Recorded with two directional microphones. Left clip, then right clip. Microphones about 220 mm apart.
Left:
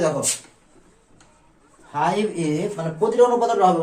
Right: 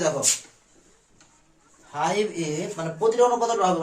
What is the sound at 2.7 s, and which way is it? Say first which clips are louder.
Speech: left 2 dB; 20° right (ahead or behind).